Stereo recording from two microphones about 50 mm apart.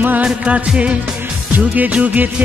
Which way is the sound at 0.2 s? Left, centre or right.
Right.